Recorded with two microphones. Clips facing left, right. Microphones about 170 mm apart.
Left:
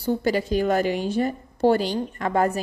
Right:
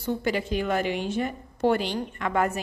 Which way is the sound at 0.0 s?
35° left (ahead or behind).